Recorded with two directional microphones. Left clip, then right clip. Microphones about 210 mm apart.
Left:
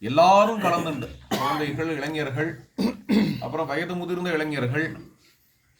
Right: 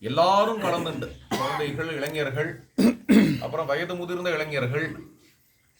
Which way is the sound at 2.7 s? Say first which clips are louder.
Right 5 dB; 45° right (ahead or behind).